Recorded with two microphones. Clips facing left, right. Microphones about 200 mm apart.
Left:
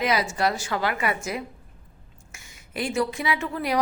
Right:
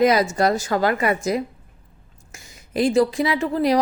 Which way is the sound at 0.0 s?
45° right (ahead or behind).